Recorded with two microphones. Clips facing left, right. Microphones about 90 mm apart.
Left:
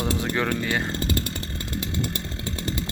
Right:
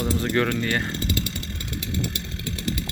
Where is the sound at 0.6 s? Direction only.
5° left (ahead or behind).